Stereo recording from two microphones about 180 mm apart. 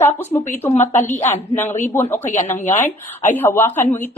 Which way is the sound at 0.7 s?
40° left (ahead or behind).